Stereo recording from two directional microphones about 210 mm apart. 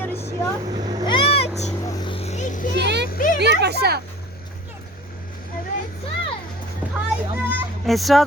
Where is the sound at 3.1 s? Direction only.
40° left (ahead or behind).